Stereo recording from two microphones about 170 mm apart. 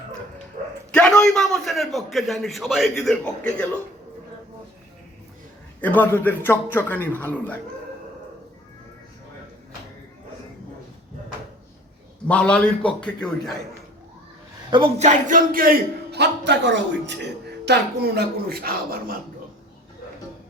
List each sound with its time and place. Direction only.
0.9 s a man's voice: 5° left (ahead or behind)
5.8 s a man's voice: 10° left (ahead or behind)
12.3 s a man's voice: 5° left (ahead or behind)
14.7 s a man's voice: 30° right (ahead or behind); by 15.7 s 55° right (ahead or behind)
16.1 s a man's voice: 85° right
17.7 s speech: 70° right (ahead or behind)